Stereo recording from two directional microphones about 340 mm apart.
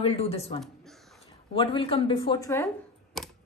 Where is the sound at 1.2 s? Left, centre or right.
Centre.